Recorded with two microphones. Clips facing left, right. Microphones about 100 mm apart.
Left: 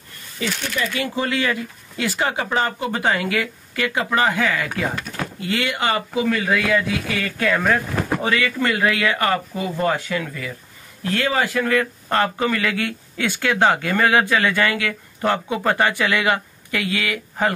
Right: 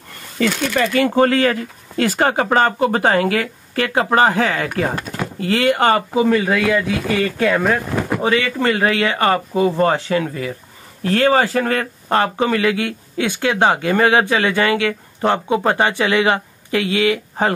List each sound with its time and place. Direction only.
0.4 s speech: 65° right (ahead or behind); by 6.0 s 50° right (ahead or behind)
6.1 s speech: 30° right (ahead or behind)
12.1 s speech: 25° right (ahead or behind)